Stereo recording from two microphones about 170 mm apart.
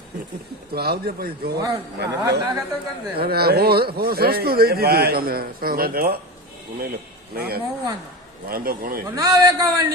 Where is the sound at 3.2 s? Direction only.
65° right (ahead or behind).